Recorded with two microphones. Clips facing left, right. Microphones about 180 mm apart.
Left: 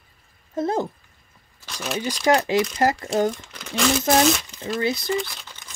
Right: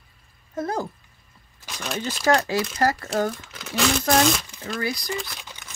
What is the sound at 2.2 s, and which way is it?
Speech, 20° left (ahead or behind).